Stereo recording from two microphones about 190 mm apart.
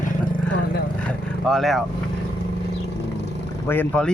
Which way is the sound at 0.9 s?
5° left (ahead or behind).